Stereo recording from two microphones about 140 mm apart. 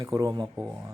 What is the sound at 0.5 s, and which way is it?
Speech, 10° right (ahead or behind).